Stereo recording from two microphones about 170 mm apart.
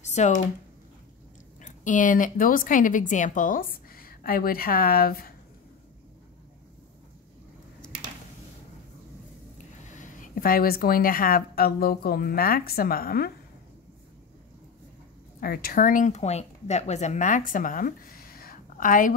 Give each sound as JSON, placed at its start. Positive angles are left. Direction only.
{"t": 0.0, "sound": "a sound", "side_deg": 45}
{"t": 1.6, "sound": "speech", "side_deg": 50}
{"t": 9.9, "sound": "speech", "side_deg": 55}
{"t": 15.4, "sound": "speech", "side_deg": 60}